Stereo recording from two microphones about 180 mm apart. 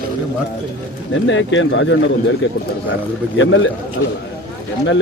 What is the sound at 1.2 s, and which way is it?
Speech, 90° left.